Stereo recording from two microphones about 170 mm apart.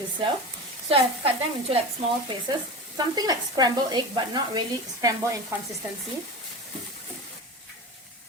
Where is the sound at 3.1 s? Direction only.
25° right (ahead or behind).